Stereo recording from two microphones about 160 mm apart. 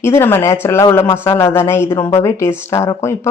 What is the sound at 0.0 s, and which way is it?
Speech, 15° left (ahead or behind).